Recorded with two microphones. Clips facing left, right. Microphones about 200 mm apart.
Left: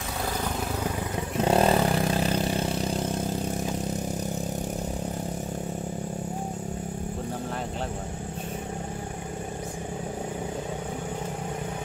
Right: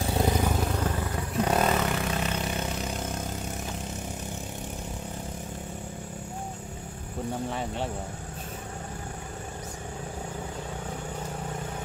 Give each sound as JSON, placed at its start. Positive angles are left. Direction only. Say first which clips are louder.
{"t": 1.4, "sound": "vehicle", "louder": "left 4 dB", "side_deg": 30}